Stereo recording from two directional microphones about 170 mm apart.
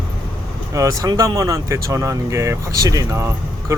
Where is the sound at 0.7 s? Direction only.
20° right (ahead or behind).